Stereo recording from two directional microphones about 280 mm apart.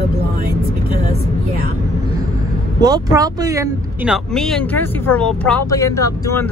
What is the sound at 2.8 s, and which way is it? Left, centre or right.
Speech, centre.